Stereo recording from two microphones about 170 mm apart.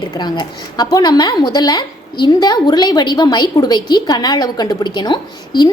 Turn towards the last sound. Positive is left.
turn(degrees=25)  # may be behind; listen again after turning